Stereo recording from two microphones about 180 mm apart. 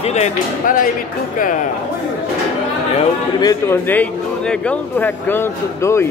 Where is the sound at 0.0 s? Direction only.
40° left (ahead or behind).